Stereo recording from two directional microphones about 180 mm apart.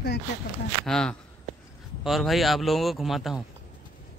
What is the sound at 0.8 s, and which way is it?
Speech, 5° left (ahead or behind).